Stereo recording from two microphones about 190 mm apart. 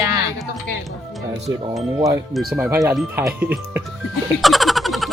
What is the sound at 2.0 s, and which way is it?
Speech, 15° right (ahead or behind).